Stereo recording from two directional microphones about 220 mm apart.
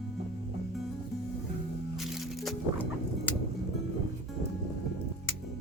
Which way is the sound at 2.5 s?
10° left (ahead or behind).